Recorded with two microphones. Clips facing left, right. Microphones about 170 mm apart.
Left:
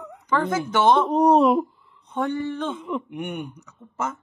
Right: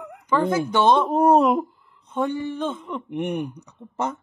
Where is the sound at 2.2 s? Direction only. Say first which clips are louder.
Right 1 dB; 15° right (ahead or behind).